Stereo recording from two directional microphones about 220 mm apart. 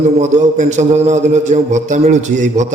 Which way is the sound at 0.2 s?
30° right (ahead or behind).